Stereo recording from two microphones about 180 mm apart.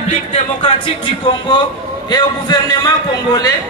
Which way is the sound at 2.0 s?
25° left (ahead or behind).